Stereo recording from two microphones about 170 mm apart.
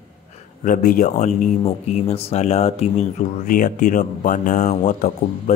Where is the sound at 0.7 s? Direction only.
50° left (ahead or behind).